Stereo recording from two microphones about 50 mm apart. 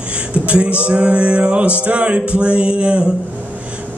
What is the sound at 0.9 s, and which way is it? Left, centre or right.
Music, right.